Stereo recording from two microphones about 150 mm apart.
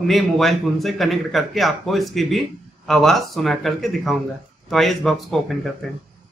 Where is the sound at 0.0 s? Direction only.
Centre (ahead or behind).